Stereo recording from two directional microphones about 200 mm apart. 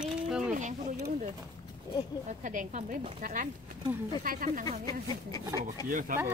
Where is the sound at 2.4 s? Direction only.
40° right (ahead or behind).